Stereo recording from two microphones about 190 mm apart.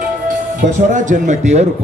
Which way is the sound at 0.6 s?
40° right (ahead or behind).